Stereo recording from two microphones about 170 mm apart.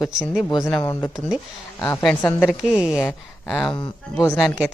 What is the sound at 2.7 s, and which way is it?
Speech, 5° right (ahead or behind).